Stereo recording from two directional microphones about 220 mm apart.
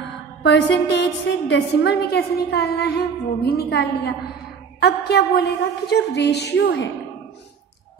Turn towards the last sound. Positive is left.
turn(degrees=55)  # may be behind; listen again after turning